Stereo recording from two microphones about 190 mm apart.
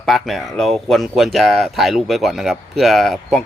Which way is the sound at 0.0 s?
Centre (ahead or behind).